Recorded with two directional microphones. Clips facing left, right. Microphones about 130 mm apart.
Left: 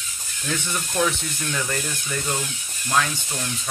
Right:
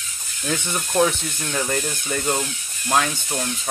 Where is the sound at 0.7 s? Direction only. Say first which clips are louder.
Right 5 dB; 30° right (ahead or behind).